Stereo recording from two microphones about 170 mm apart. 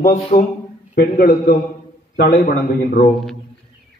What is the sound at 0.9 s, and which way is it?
Speech, 70° left (ahead or behind).